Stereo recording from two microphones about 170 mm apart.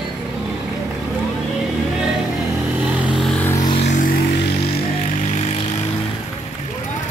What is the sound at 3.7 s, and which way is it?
Vehicle, 45° left (ahead or behind).